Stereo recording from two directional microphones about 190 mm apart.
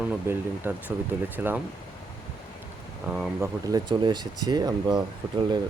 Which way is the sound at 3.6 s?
20° right (ahead or behind).